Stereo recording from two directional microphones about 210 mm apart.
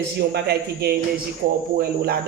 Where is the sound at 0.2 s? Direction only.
50° right (ahead or behind).